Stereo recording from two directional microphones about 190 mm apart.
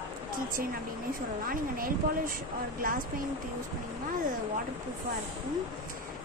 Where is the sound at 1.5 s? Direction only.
50° right (ahead or behind).